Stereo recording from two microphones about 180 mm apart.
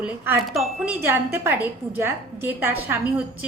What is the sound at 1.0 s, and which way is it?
A woman's voice, 10° right (ahead or behind).